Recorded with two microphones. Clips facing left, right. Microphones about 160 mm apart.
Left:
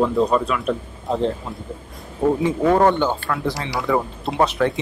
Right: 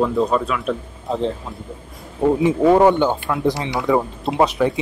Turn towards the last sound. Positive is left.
turn(degrees=-10)  # may be behind; listen again after turning